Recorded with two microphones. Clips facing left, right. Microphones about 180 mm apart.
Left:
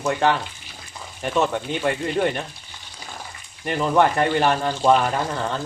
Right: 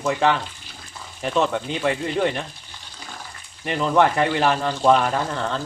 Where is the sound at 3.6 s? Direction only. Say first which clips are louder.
Even; centre (ahead or behind).